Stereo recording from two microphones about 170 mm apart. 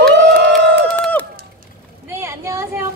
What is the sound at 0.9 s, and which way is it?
Run, 10° left (ahead or behind).